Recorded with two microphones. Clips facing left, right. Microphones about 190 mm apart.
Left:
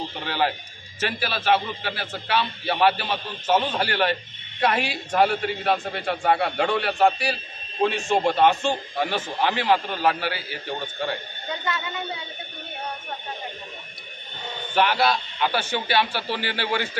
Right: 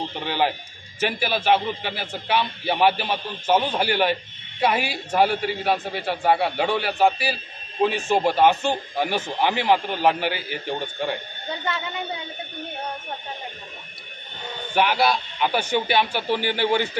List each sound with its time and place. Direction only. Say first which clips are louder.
1.0 s a man's voice: right 2 dB; 15° right (ahead or behind)
14.7 s a man's voice: right 1 dB; 10° right (ahead or behind)